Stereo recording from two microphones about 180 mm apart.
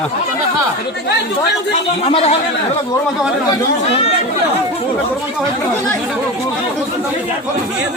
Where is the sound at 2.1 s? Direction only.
35° left (ahead or behind).